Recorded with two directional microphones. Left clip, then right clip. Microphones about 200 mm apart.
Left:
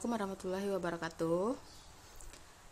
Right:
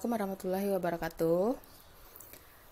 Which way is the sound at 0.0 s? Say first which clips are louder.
Right 4 dB; 10° right (ahead or behind).